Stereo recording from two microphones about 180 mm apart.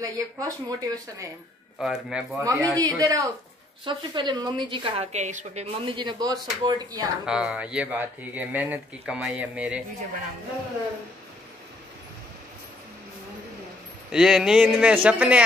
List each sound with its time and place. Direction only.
0.0 s a woman's voice: 20° right (ahead or behind)
1.8 s speech: centre (ahead or behind)
2.3 s a woman's voice: 15° right (ahead or behind)
7.2 s speech: 5° right (ahead or behind)
14.1 s speech: 5° right (ahead or behind)